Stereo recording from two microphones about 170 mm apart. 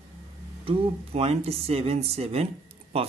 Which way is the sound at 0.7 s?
35° right (ahead or behind).